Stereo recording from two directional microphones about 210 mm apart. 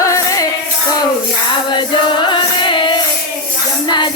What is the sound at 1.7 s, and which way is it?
Music, 20° left (ahead or behind).